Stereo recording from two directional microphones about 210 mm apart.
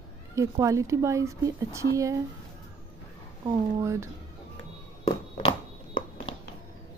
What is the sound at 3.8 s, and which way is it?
Speech, 15° right (ahead or behind).